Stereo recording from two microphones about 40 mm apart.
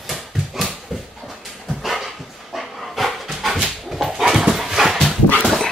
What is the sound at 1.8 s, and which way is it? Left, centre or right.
Dog, centre.